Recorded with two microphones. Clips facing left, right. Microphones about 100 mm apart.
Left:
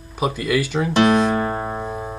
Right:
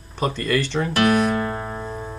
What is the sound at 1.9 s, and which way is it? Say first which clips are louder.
Music: left 3 dB; 25° left (ahead or behind).